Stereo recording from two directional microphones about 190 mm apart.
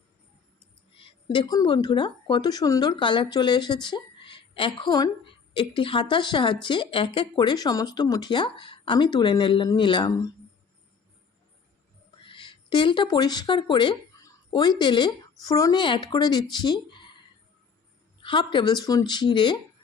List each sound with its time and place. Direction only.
1.3 s speech: 25° left (ahead or behind)
12.2 s speech: 25° left (ahead or behind)
18.2 s speech: 25° left (ahead or behind)